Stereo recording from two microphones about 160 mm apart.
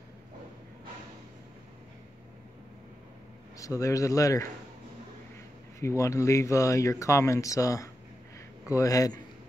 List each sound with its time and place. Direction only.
3.5 s speech: 20° left (ahead or behind)
5.8 s speech: 20° left (ahead or behind)